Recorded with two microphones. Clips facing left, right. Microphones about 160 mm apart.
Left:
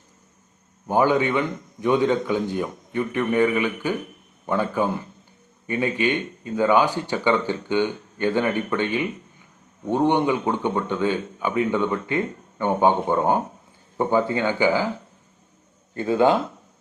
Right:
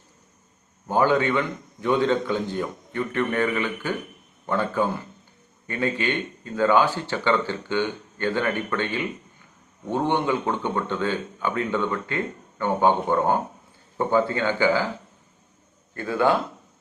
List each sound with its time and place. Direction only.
0.9 s speech: 15° left (ahead or behind)
16.0 s speech: 20° left (ahead or behind)